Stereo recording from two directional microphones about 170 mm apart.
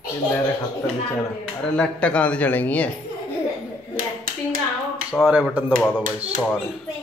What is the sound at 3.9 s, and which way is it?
Hands, 55° right (ahead or behind).